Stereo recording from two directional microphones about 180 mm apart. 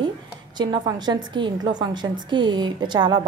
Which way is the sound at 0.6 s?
25° right (ahead or behind).